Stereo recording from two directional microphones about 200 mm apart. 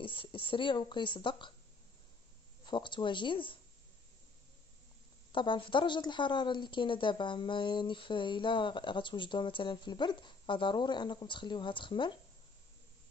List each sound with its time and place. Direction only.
0.0 s a woman's voice: 25° left (ahead or behind)
2.6 s a woman's voice: 25° left (ahead or behind)
5.3 s a woman's voice: 25° left (ahead or behind)